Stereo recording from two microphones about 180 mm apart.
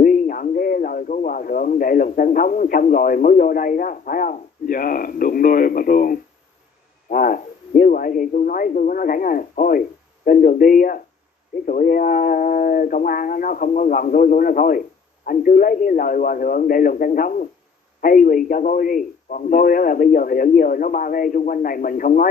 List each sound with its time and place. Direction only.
0.0 s a man's voice: 50° left (ahead or behind)